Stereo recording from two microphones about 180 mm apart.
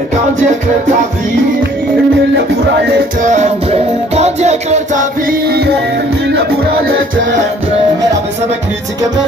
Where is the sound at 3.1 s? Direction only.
40° right (ahead or behind); by 5.7 s 60° right (ahead or behind).